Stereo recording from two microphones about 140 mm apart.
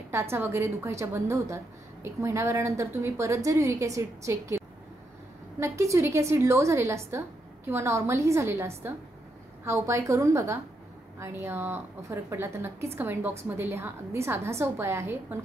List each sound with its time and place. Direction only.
0.1 s a woman's voice: 20° right (ahead or behind)